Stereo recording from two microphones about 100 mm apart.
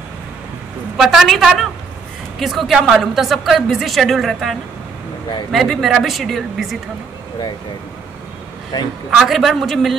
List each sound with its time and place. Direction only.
0.9 s a woman's voice: 5° right (ahead or behind)
8.7 s a man's voice: 45° left (ahead or behind)
9.1 s a woman's voice: centre (ahead or behind)